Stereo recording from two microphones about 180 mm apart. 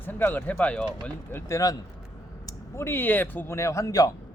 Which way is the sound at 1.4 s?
20° left (ahead or behind).